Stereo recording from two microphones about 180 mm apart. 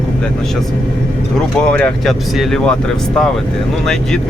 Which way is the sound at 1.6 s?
5° left (ahead or behind).